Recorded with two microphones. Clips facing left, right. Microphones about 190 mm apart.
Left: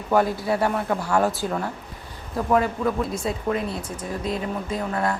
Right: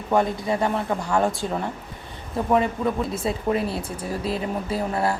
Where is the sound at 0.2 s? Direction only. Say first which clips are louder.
Left 1 dB; 5° left (ahead or behind).